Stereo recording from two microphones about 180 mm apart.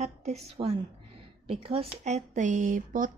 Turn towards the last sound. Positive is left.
turn(degrees=-45)  # may be behind; listen again after turning